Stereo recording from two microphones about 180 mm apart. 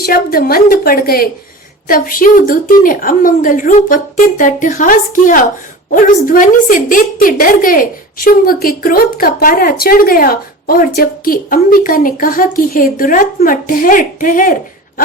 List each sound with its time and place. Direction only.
0.0 s a woman's voice: 55° left (ahead or behind)